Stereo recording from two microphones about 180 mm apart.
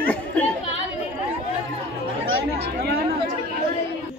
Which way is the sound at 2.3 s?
70° right (ahead or behind).